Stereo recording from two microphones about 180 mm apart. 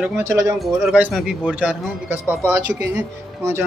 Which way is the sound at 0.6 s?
Centre (ahead or behind).